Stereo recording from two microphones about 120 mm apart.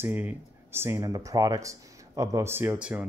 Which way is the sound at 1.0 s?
30° right (ahead or behind).